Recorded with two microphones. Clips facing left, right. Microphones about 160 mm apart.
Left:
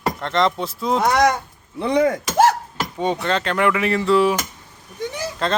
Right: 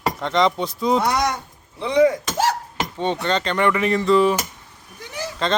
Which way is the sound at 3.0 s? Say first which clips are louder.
Left 1 dB; 5° left (ahead or behind).